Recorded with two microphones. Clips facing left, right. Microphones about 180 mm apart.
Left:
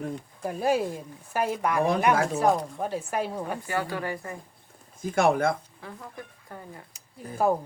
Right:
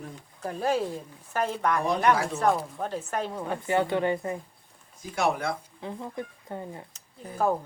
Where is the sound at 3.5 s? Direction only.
25° right (ahead or behind).